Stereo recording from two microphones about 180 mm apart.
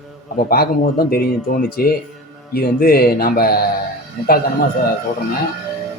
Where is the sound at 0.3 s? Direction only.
55° left (ahead or behind).